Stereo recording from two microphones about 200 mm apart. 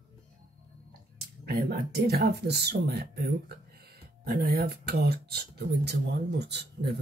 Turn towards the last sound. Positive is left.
turn(degrees=-60)  # may be behind; listen again after turning